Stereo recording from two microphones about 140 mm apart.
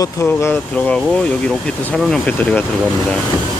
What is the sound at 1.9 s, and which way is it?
Speech, 10° left (ahead or behind).